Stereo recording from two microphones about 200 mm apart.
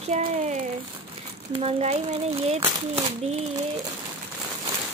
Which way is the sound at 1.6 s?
30° right (ahead or behind).